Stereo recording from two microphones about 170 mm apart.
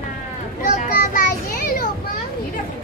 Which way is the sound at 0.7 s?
50° left (ahead or behind).